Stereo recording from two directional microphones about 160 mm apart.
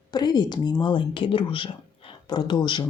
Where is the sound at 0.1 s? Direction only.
25° left (ahead or behind).